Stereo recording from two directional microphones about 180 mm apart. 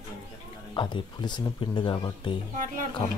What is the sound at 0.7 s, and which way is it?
Speech, 25° left (ahead or behind).